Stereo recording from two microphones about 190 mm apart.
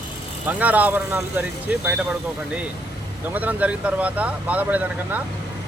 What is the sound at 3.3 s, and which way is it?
Speech, 10° right (ahead or behind).